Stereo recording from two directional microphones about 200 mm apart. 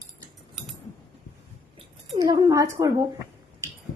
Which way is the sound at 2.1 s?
20° right (ahead or behind).